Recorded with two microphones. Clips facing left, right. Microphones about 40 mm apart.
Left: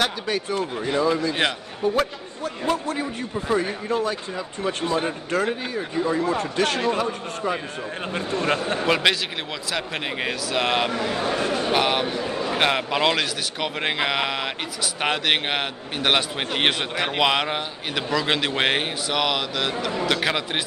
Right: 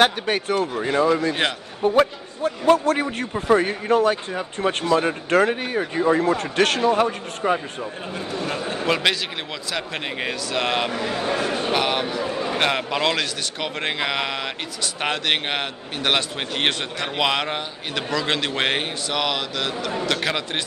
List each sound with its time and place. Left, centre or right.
0.3 s speech: right
1.8 s speech: right
2.8 s a man's voice: right
3.3 s speech: right
6.4 s speech: right
8.1 s a man's voice: left
8.8 s a man's voice: centre
12.2 s a man's voice: centre